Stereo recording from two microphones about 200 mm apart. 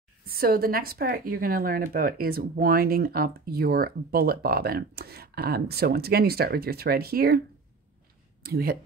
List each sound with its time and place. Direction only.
0.3 s speech: 50° right (ahead or behind)